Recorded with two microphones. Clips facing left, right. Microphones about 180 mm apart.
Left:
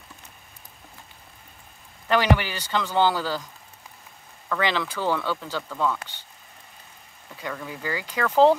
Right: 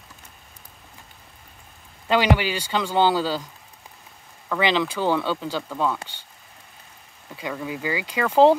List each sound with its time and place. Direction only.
2.0 s speech: 15° right (ahead or behind)
4.5 s speech: 15° right (ahead or behind)
7.3 s speech: 15° right (ahead or behind)